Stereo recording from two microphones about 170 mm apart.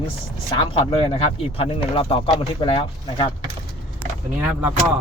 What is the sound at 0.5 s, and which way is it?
Speech, 30° left (ahead or behind).